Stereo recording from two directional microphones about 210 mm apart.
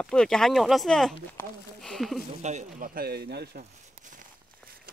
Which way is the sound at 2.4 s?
40° right (ahead or behind).